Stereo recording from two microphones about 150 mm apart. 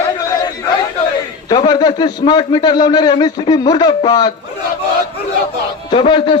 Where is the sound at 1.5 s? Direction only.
25° left (ahead or behind).